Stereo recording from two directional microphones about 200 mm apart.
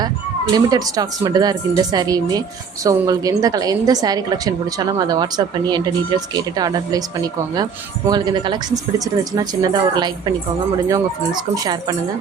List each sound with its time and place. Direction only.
0.5 s a woman's voice: 20° right (ahead or behind)